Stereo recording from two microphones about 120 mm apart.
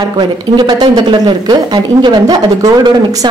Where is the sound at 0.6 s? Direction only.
35° right (ahead or behind).